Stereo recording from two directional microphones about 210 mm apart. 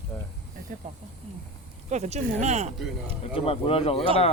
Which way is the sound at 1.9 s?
35° right (ahead or behind).